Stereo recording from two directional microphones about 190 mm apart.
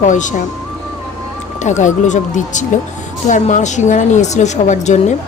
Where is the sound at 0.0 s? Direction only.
40° left (ahead or behind).